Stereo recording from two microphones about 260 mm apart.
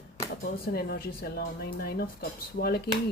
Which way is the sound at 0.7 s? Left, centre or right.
Left.